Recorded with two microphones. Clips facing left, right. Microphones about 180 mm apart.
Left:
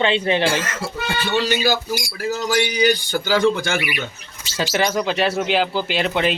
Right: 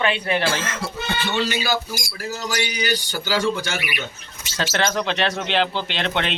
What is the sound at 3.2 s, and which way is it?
Speech, 55° left (ahead or behind).